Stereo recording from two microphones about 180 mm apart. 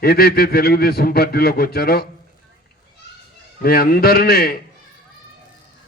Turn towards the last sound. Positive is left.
turn(degrees=55)  # may be behind; listen again after turning